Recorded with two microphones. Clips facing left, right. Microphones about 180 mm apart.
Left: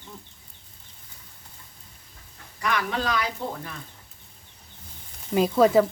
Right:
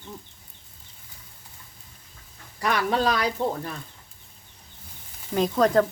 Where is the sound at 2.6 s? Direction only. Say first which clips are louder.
Right 4 dB; 35° right (ahead or behind).